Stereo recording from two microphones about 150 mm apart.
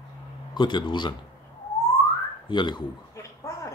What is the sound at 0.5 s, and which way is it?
Speech, 30° left (ahead or behind).